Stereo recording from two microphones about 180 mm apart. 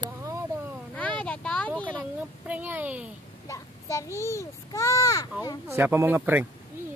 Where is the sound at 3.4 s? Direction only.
15° left (ahead or behind).